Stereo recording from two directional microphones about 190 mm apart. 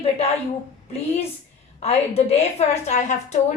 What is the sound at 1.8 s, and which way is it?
A woman's voice, 35° left (ahead or behind).